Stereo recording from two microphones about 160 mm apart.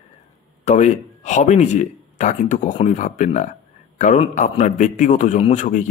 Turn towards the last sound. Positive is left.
turn(degrees=50)  # may be behind; listen again after turning